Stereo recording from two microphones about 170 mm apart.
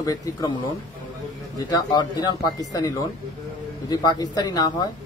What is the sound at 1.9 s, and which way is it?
Speech, 25° left (ahead or behind).